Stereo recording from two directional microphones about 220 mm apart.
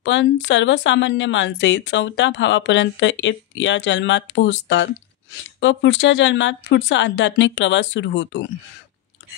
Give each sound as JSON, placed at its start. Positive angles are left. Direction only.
{"t": 0.0, "sound": "speech", "side_deg": 55}